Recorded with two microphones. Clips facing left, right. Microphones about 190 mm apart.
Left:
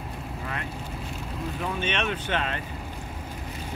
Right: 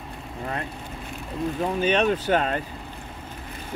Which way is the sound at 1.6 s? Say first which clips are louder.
Right 7 dB; 35° right (ahead or behind).